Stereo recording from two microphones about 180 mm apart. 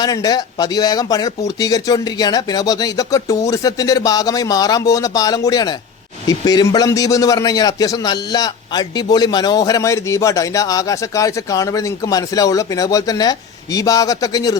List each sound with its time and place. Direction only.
0.0 s a man's voice: 20° left (ahead or behind)